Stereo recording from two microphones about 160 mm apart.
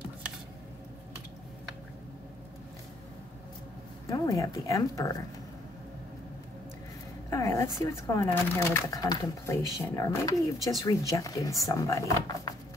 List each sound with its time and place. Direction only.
4.1 s speech: 20° left (ahead or behind)
7.2 s speech: 20° left (ahead or behind)